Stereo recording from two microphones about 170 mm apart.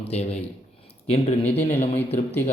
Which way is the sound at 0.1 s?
40° left (ahead or behind).